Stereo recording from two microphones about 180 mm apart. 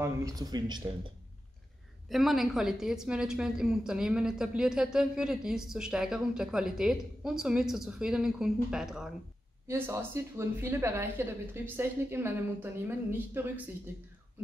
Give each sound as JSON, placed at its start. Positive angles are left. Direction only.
{"t": 0.0, "sound": "speech", "side_deg": -20}
{"t": 2.0, "sound": "a woman's voice", "side_deg": 0}
{"t": 9.7, "sound": "a woman's voice", "side_deg": -15}